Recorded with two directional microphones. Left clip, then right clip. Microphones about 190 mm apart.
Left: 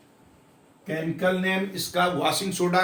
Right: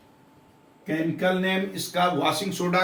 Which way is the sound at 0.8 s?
10° left (ahead or behind).